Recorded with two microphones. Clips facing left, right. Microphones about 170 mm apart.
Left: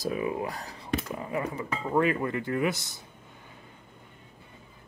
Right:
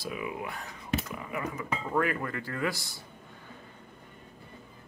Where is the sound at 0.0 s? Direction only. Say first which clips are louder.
Left 6 dB; 35° left (ahead or behind); by 3.0 s 20° left (ahead or behind).